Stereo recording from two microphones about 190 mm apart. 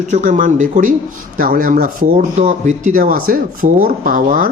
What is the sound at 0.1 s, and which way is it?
Speech, 40° right (ahead or behind).